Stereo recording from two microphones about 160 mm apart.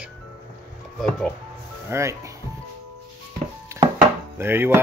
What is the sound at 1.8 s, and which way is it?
Speech, 20° right (ahead or behind).